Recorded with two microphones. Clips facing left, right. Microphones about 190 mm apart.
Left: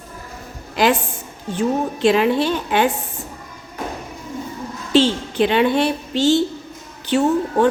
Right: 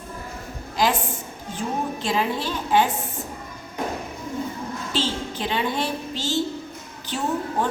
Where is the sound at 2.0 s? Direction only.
70° left (ahead or behind).